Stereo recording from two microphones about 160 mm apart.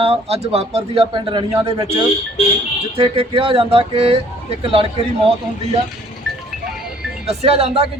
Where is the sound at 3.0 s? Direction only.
35° right (ahead or behind).